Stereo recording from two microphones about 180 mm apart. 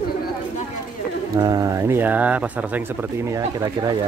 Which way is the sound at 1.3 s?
20° right (ahead or behind).